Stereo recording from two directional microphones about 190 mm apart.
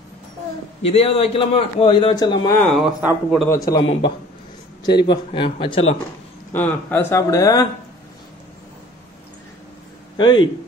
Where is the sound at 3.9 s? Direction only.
30° left (ahead or behind).